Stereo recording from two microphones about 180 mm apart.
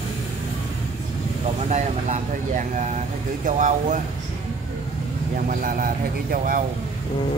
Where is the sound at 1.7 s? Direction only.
45° right (ahead or behind).